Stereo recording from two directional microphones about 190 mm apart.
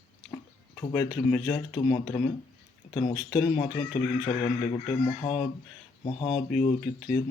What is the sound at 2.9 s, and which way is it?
Speech, 30° left (ahead or behind).